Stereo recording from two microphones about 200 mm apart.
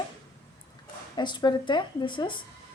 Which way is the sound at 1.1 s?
20° left (ahead or behind).